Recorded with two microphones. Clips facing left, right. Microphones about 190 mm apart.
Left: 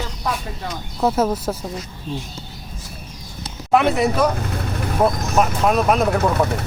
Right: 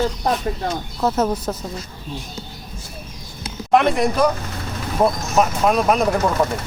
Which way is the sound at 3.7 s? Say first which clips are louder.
Even; 5° left (ahead or behind).